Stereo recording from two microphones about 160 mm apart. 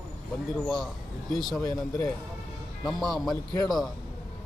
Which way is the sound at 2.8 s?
Centre (ahead or behind).